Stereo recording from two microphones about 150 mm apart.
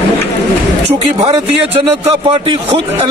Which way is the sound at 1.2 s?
40° right (ahead or behind).